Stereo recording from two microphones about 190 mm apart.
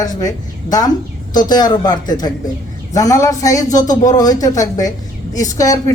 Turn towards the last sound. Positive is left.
turn(degrees=20)  # may be behind; listen again after turning